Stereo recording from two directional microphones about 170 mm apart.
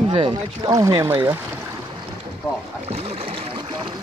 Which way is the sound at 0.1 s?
25° right (ahead or behind).